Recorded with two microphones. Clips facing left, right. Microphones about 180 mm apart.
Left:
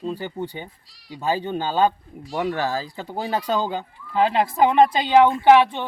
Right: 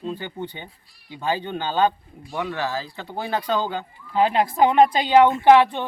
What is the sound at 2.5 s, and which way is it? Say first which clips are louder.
Speech: left 2 dB; 40° left (ahead or behind).